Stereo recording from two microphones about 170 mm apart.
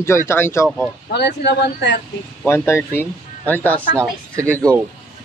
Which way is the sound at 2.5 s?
15° left (ahead or behind).